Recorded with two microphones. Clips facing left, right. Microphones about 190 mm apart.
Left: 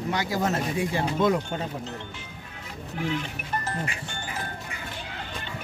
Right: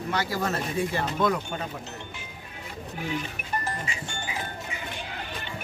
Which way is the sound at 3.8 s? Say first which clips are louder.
Left 1 dB; 55° left (ahead or behind).